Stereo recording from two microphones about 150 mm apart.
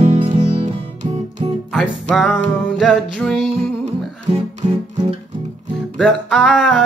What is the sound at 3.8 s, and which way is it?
Music, 50° right (ahead or behind).